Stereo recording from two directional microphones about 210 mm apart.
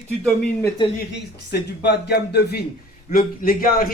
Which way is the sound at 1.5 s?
50° left (ahead or behind).